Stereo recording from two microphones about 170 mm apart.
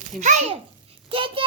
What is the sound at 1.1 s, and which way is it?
Speech, 30° right (ahead or behind).